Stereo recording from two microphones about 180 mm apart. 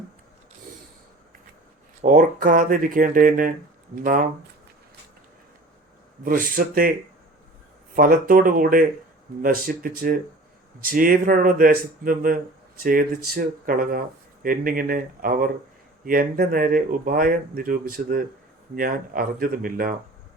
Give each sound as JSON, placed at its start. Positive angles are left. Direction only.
{"t": 2.0, "sound": "speech", "side_deg": -50}
{"t": 6.2, "sound": "speech", "side_deg": -50}
{"t": 7.9, "sound": "speech", "side_deg": -50}